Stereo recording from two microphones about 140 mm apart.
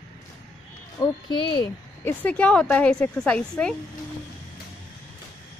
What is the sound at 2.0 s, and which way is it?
A woman's voice, 10° left (ahead or behind).